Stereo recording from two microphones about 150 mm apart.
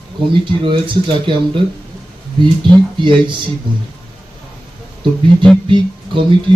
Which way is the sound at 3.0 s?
30° right (ahead or behind).